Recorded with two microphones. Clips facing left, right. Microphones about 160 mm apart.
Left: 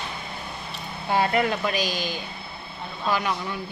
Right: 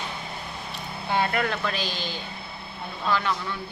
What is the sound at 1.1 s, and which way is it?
Speech, 20° left (ahead or behind).